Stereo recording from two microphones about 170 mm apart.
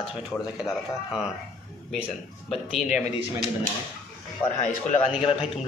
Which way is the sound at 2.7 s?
Centre (ahead or behind).